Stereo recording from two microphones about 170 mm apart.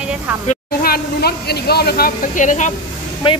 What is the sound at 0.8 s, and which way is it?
A woman's voice, 65° left (ahead or behind).